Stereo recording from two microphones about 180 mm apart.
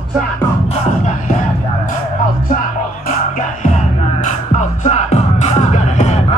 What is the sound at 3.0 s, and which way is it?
Music, 45° left (ahead or behind).